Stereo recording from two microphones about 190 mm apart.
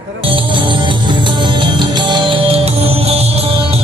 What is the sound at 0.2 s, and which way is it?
Music, 25° right (ahead or behind).